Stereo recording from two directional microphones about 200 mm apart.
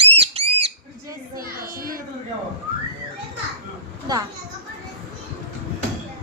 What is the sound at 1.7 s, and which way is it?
Speech, 45° right (ahead or behind).